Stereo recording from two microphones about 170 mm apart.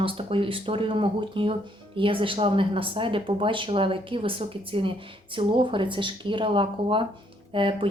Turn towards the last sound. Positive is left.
turn(degrees=-30)  # may be behind; listen again after turning